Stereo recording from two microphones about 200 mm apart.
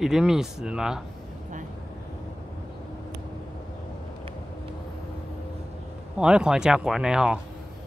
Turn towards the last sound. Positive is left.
turn(degrees=-5)  # may be behind; listen again after turning